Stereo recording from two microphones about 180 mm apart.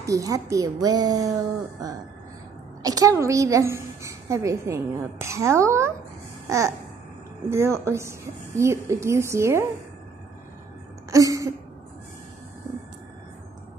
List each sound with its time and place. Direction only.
0.0 s a woman's voice: 20° right (ahead or behind)
2.8 s a woman's voice: 20° right (ahead or behind)
6.4 s babbling: 15° right (ahead or behind)
7.4 s a woman's voice: 15° right (ahead or behind)
11.1 s a sound: 20° right (ahead or behind)